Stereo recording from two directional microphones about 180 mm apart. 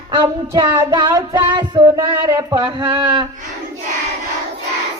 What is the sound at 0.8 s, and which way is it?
Music, 25° right (ahead or behind).